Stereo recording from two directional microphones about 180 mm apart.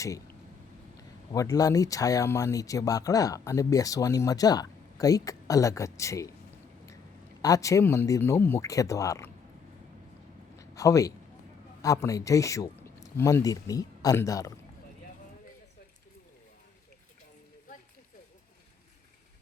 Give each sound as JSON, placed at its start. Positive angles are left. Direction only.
{"t": 1.3, "sound": "speech", "side_deg": 20}
{"t": 7.4, "sound": "speech", "side_deg": 20}
{"t": 10.6, "sound": "a sound", "side_deg": 20}
{"t": 11.8, "sound": "a man's voice", "side_deg": 20}